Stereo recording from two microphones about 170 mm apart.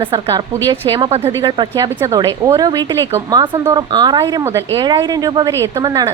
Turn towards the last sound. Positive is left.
turn(degrees=-20)  # may be behind; listen again after turning